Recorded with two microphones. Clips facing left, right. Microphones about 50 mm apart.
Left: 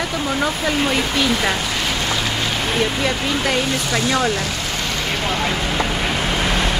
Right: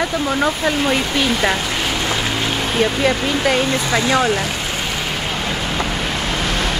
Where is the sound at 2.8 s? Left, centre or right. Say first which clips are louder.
Right 5 dB; centre.